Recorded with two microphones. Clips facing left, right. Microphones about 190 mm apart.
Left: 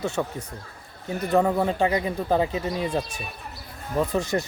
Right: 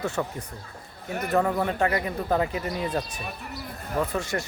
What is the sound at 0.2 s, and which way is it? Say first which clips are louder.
Speech: left 2 dB; 10° left (ahead or behind).